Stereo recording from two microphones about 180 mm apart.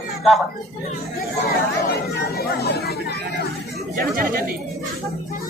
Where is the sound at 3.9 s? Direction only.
55° right (ahead or behind).